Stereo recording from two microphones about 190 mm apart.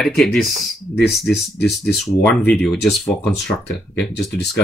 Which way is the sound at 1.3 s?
60° left (ahead or behind).